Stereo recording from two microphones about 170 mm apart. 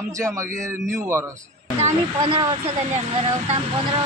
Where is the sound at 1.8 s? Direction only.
30° right (ahead or behind).